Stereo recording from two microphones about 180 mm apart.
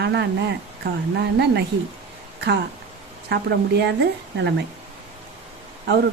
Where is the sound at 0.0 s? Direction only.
70° right (ahead or behind).